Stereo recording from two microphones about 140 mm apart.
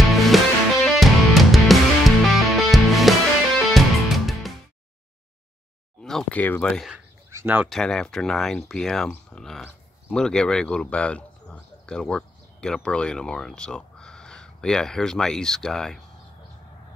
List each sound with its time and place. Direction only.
0.0 s music: centre (ahead or behind)
6.0 s speech: 5° left (ahead or behind)
7.2 s a sound: 15° right (ahead or behind)
7.7 s speech: 5° left (ahead or behind)